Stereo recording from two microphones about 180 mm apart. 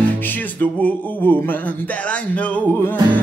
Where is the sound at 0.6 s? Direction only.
10° left (ahead or behind).